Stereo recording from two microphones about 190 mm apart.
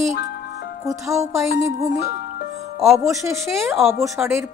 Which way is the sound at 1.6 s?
15° right (ahead or behind).